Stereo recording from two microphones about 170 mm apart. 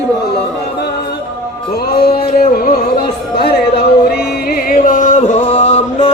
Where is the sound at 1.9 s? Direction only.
65° left (ahead or behind).